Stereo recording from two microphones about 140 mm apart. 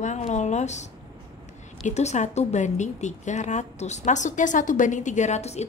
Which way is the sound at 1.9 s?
55° left (ahead or behind).